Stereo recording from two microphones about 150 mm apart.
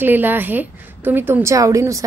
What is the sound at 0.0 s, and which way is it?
A woman's voice, 15° right (ahead or behind).